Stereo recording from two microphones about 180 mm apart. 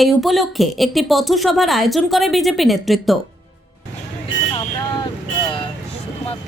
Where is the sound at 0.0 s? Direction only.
Centre (ahead or behind).